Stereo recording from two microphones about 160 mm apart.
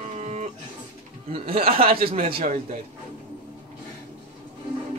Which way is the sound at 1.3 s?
35° right (ahead or behind).